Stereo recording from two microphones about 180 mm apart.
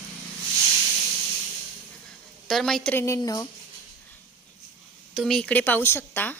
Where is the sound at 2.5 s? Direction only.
Centre (ahead or behind).